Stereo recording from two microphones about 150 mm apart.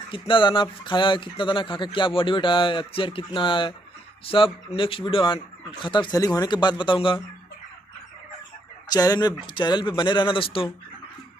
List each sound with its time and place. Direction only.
0.3 s speech: 35° left (ahead or behind)
8.8 s speech: 25° left (ahead or behind)